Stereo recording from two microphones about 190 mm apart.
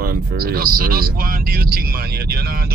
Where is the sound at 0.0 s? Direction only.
50° right (ahead or behind).